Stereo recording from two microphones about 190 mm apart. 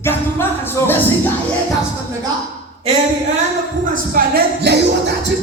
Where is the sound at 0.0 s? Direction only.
10° left (ahead or behind).